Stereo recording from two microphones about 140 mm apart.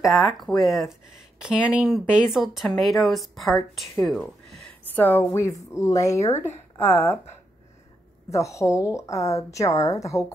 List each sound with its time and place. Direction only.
0.0 s a woman's voice: centre (ahead or behind)
4.9 s a woman's voice: 15° left (ahead or behind)
8.3 s a woman's voice: 20° left (ahead or behind)